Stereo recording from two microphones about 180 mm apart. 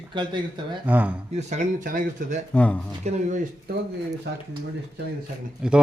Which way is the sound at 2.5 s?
5° left (ahead or behind).